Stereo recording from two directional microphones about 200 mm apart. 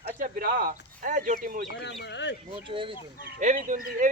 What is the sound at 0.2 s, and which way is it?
Speech, 45° right (ahead or behind).